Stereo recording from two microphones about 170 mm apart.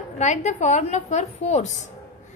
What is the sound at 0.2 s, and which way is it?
A woman's voice, 45° left (ahead or behind).